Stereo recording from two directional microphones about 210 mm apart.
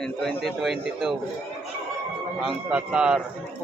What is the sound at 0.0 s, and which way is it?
A man's voice, centre (ahead or behind).